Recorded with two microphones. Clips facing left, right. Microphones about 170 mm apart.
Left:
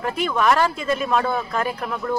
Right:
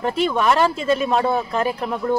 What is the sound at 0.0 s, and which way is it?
Speech, 30° right (ahead or behind).